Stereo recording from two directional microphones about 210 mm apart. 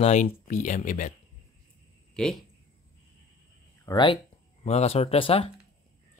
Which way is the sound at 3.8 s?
20° left (ahead or behind).